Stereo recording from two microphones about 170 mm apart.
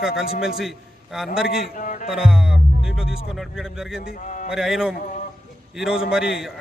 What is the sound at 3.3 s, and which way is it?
Speech, centre (ahead or behind).